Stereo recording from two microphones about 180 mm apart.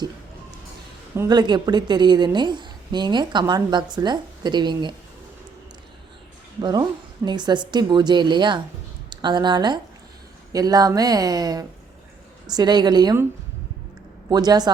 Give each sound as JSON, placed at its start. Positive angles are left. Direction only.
{"t": 1.1, "sound": "a woman's voice", "side_deg": -20}
{"t": 6.6, "sound": "a woman's voice", "side_deg": -25}
{"t": 14.3, "sound": "a woman's voice", "side_deg": -20}